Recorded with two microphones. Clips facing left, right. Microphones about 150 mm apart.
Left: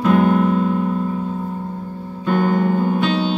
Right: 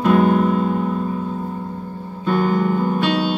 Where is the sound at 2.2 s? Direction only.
50° left (ahead or behind).